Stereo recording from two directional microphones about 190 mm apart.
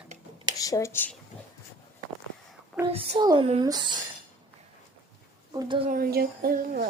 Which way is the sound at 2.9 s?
25° right (ahead or behind).